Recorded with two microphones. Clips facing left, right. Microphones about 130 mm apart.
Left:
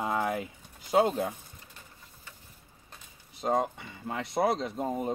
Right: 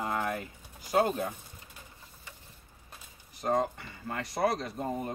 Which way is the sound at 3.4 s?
20° left (ahead or behind).